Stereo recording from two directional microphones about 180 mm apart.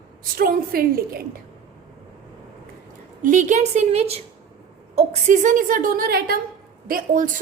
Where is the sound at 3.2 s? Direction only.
45° right (ahead or behind).